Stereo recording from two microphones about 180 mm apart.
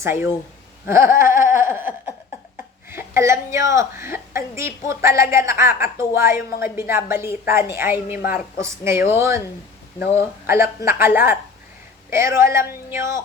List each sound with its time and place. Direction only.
0.0 s a woman's voice: 15° right (ahead or behind)
2.9 s a woman's voice: 15° right (ahead or behind)
10.4 s a woman's voice: 15° right (ahead or behind)